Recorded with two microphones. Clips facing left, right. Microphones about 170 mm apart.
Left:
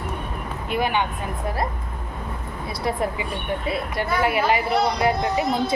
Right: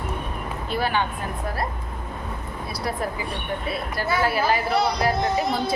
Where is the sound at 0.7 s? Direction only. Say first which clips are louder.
Left 2 dB; 15° left (ahead or behind).